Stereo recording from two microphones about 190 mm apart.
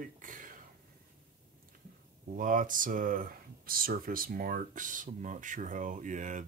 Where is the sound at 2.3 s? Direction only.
45° right (ahead or behind).